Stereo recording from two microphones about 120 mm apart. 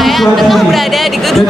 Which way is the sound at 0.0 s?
Centre (ahead or behind).